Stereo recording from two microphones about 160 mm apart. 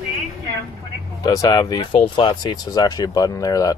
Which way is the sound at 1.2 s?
25° left (ahead or behind).